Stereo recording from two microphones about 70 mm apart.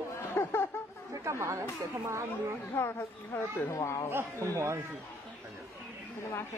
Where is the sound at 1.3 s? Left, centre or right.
Right.